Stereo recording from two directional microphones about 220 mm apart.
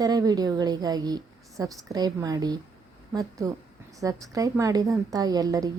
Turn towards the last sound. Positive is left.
turn(degrees=-15)  # may be behind; listen again after turning